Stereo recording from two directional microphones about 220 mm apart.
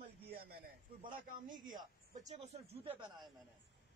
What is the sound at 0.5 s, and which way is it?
A man's voice, 40° right (ahead or behind).